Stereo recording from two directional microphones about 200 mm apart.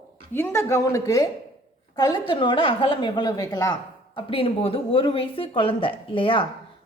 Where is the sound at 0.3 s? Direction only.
10° left (ahead or behind).